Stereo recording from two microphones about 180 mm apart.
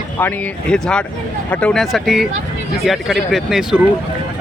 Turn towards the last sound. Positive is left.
turn(degrees=0)  # may be behind; listen again after turning